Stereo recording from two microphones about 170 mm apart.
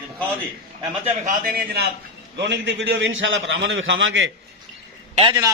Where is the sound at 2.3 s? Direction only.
90° right.